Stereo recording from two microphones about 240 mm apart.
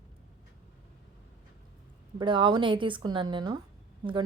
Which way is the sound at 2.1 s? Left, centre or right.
Right.